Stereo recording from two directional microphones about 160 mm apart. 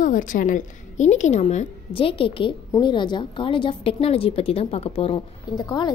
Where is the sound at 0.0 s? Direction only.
55° left (ahead or behind).